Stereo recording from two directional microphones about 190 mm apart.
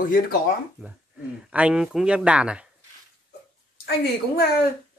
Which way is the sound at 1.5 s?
5° right (ahead or behind).